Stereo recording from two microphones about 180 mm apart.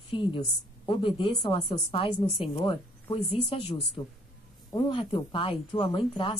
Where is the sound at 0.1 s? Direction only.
30° left (ahead or behind).